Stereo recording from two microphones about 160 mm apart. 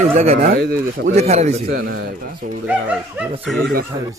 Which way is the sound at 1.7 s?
75° right (ahead or behind).